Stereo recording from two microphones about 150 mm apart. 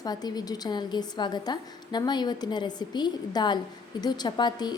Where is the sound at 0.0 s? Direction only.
25° left (ahead or behind).